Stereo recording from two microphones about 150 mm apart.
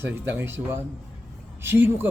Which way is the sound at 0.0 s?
15° right (ahead or behind).